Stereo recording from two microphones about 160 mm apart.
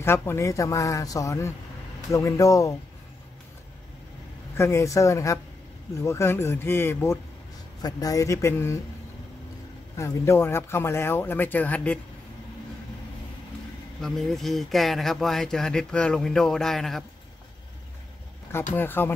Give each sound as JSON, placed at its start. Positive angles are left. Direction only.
{"t": 0.0, "sound": "a man's voice", "side_deg": 15}
{"t": 4.6, "sound": "a man's voice", "side_deg": 20}
{"t": 9.9, "sound": "speech", "side_deg": 15}
{"t": 14.0, "sound": "speech", "side_deg": 0}
{"t": 18.8, "sound": "speech", "side_deg": 15}